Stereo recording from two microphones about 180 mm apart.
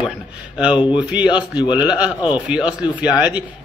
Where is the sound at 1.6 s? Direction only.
25° left (ahead or behind).